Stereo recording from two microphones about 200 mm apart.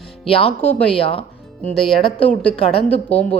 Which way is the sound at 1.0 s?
30° left (ahead or behind).